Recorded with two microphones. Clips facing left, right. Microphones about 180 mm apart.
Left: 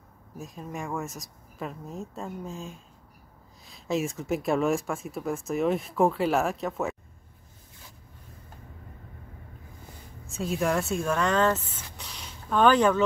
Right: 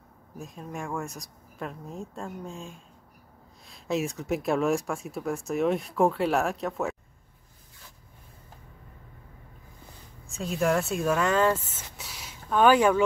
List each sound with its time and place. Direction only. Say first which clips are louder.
0.4 s speech: even; centre (ahead or behind)
10.2 s speech: right 1 dB; centre (ahead or behind)
12.0 s a sound: even; 5° right (ahead or behind)